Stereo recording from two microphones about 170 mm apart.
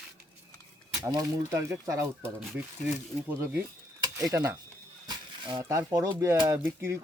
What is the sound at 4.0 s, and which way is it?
Dishes, 20° right (ahead or behind).